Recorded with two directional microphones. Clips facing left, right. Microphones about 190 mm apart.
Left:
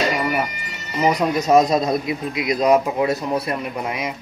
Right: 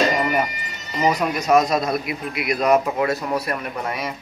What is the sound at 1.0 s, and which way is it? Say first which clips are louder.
A man's voice: left 2 dB; 20° left (ahead or behind).